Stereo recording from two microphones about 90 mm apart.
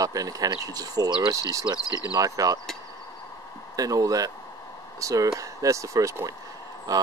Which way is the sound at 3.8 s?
40° right (ahead or behind).